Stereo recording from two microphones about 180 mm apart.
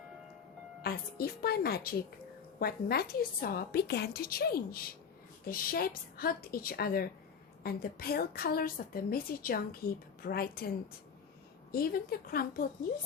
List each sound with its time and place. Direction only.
0.8 s a woman's voice: 60° left (ahead or behind)
11.7 s a woman's voice: 55° left (ahead or behind)